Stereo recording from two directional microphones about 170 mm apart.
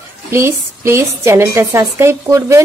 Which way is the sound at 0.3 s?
15° right (ahead or behind).